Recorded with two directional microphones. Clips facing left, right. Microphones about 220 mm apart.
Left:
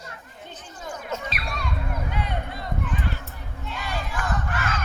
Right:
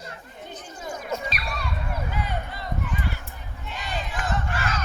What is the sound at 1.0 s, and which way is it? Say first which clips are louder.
Music: right 2 dB; 10° right (ahead or behind).